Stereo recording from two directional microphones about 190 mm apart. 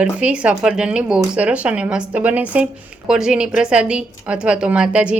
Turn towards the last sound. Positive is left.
turn(degrees=-5)  # may be behind; listen again after turning